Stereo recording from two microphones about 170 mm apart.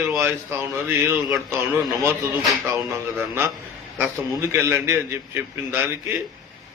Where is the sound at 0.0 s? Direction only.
15° right (ahead or behind).